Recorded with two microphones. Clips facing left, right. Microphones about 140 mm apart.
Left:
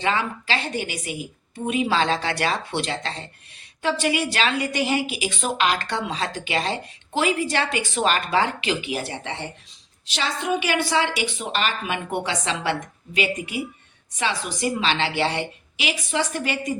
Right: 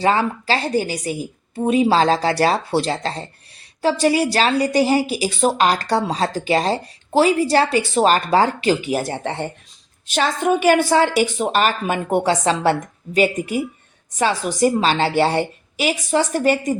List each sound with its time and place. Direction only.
0.0 s a woman's voice: 40° right (ahead or behind)